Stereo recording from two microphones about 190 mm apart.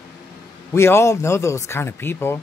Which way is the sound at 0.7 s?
15° left (ahead or behind).